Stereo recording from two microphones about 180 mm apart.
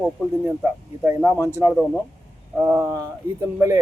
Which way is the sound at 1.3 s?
15° right (ahead or behind).